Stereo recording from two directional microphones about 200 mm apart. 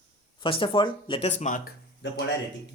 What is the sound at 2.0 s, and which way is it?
Speech, 65° left (ahead or behind).